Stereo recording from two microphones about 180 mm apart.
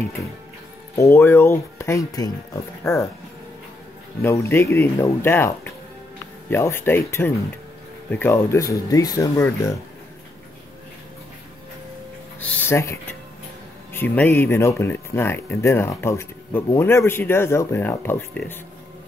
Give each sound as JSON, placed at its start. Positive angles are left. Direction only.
{"t": 0.9, "sound": "speech", "side_deg": 15}
{"t": 4.2, "sound": "speech", "side_deg": 15}
{"t": 12.4, "sound": "speech", "side_deg": 10}